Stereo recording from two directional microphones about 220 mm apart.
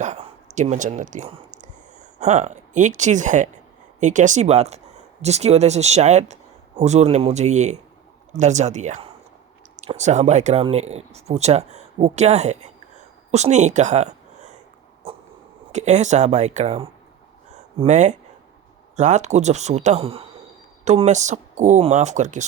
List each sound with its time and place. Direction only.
0.0 s a sound: 35° right (ahead or behind)
4.0 s speech: 35° right (ahead or behind)
15.0 s dog: 25° right (ahead or behind)
15.7 s speech: 30° right (ahead or behind)
17.5 s a sound: 30° right (ahead or behind)
18.9 s speech: 30° right (ahead or behind)